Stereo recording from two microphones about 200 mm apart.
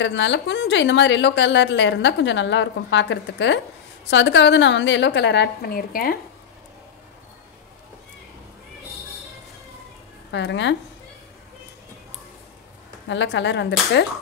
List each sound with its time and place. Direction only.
0.0 s a woman's voice: 65° left (ahead or behind); by 6.1 s 50° left (ahead or behind)
10.3 s a woman's voice: 65° left (ahead or behind)
13.1 s a woman's voice: 65° left (ahead or behind)